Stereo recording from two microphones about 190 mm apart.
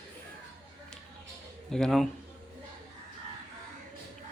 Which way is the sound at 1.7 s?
5° left (ahead or behind).